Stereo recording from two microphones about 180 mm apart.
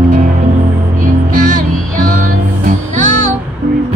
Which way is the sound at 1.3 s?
45° right (ahead or behind).